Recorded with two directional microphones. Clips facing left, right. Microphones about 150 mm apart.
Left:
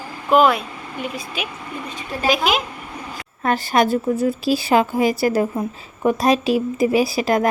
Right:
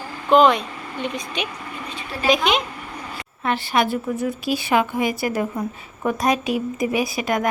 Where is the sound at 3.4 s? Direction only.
40° left (ahead or behind).